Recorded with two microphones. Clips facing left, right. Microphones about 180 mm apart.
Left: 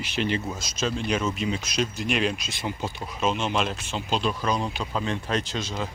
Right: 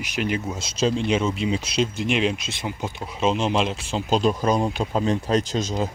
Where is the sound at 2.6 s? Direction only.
10° right (ahead or behind).